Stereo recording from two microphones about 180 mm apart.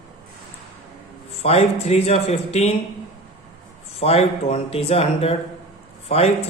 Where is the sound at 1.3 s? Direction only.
35° left (ahead or behind).